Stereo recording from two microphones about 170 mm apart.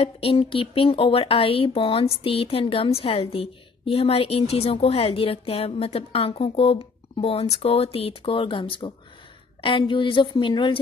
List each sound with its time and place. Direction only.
0.0 s a woman's voice: 35° left (ahead or behind)